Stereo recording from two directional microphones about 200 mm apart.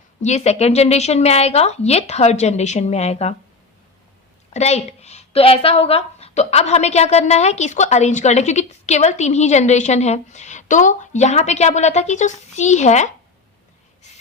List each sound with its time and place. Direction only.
0.2 s speech: 35° left (ahead or behind)
4.5 s speech: 35° left (ahead or behind)